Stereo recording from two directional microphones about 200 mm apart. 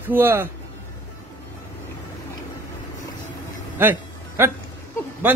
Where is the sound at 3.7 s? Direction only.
10° right (ahead or behind).